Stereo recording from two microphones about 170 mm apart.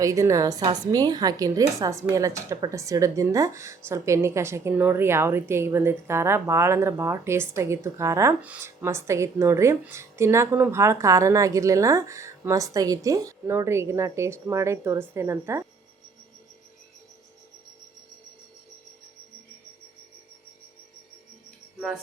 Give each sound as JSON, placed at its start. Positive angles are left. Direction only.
{"t": 0.0, "sound": "a woman's voice", "side_deg": -20}